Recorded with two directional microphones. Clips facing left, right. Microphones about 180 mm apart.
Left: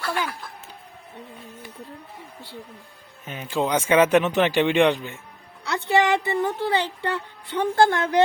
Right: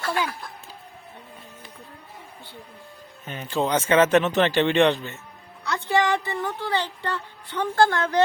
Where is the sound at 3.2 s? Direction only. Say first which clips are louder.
Even; 10° left (ahead or behind).